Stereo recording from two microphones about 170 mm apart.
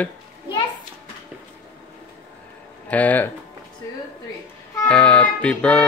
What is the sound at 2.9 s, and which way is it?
Speech, 10° left (ahead or behind).